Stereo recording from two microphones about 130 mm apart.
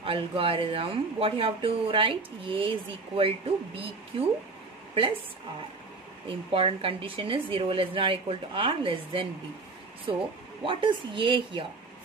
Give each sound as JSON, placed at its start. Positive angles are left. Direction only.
{"t": 0.0, "sound": "speech", "side_deg": -45}
{"t": 6.2, "sound": "speech", "side_deg": -45}